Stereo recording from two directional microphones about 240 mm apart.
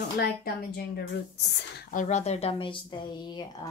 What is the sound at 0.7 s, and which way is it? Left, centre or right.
Speech, left.